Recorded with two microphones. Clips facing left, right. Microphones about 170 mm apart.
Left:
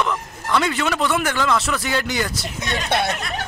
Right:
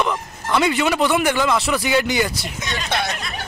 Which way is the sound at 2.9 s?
30° left (ahead or behind).